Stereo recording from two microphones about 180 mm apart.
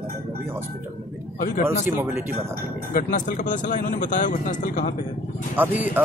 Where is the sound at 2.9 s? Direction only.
50° left (ahead or behind).